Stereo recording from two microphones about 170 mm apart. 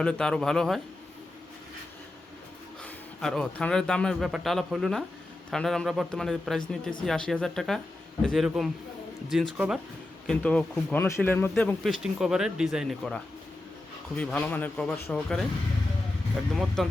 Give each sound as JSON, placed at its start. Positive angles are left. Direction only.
{"t": 0.0, "sound": "a man's voice", "side_deg": 5}
{"t": 2.8, "sound": "a man's voice", "side_deg": 5}
{"t": 10.2, "sound": "speech", "side_deg": 5}
{"t": 11.8, "sound": "a man's voice", "side_deg": 0}
{"t": 16.8, "sound": "a man's voice", "side_deg": 5}